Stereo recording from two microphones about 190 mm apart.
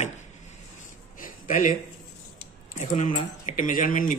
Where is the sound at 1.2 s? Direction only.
45° left (ahead or behind).